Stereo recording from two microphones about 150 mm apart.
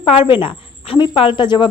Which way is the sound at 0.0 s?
35° left (ahead or behind).